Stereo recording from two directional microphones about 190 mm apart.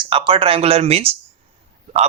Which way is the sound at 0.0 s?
25° right (ahead or behind).